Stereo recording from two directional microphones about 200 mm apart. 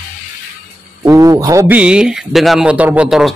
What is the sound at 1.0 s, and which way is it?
A man's voice, 15° right (ahead or behind).